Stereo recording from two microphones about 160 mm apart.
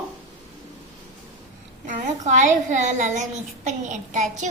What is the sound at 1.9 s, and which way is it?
A child's voice, 50° right (ahead or behind).